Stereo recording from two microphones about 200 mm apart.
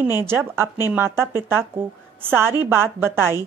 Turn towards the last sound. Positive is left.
turn(degrees=-10)  # may be behind; listen again after turning